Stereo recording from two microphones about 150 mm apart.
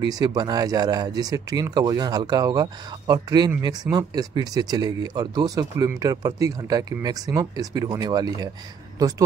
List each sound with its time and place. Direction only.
0.1 s speech: 25° right (ahead or behind)